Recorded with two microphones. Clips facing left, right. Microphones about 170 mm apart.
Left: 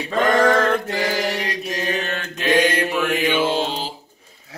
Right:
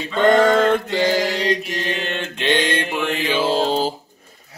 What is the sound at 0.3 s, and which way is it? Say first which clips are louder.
Mantra: right 3 dB; 25° right (ahead or behind).